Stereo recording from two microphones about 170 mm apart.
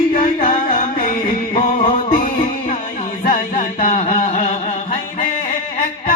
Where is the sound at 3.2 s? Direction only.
50° left (ahead or behind).